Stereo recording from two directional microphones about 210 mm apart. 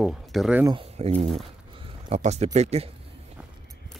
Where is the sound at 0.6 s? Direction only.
25° right (ahead or behind).